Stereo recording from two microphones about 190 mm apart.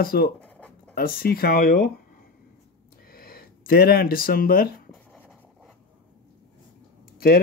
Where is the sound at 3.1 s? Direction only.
50° left (ahead or behind).